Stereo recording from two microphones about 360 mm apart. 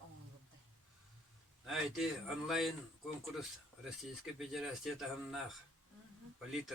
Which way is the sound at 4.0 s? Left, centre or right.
Centre.